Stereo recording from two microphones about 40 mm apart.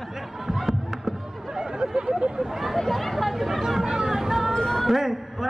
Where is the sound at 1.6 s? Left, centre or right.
Centre.